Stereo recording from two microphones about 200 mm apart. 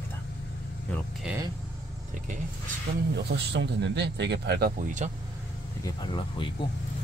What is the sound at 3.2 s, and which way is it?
Speech, 60° right (ahead or behind).